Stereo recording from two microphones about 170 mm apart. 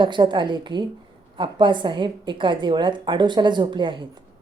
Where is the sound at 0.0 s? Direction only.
25° right (ahead or behind).